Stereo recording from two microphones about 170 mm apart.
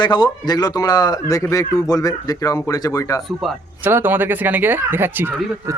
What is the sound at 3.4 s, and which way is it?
Speech, centre (ahead or behind).